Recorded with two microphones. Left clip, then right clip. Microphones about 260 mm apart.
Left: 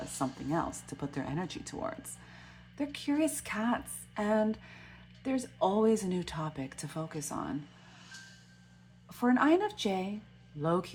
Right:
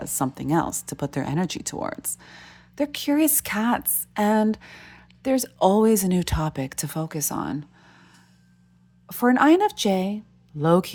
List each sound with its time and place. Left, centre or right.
0.2 s speech: right
9.0 s speech: right